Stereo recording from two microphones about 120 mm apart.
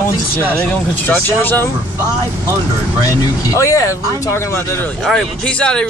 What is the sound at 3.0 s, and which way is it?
Speech, 30° left (ahead or behind).